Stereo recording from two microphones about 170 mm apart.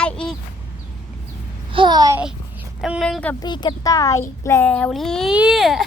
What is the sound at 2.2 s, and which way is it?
Speech, 5° right (ahead or behind).